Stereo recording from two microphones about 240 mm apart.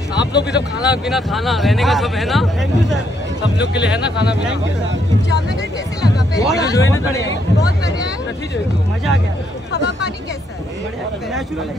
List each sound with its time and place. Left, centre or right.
0.2 s speech: left
0.7 s speech: centre
3.5 s speech: left
4.3 s speech: centre
6.1 s speech: centre
6.7 s speech: centre